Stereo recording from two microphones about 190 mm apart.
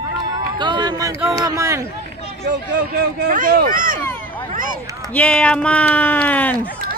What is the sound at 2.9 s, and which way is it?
Speech, 55° right (ahead or behind).